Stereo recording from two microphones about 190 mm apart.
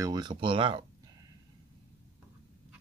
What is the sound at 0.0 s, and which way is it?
Speech, 20° right (ahead or behind).